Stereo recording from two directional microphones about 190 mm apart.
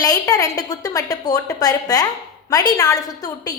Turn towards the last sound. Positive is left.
turn(degrees=20)  # may be behind; listen again after turning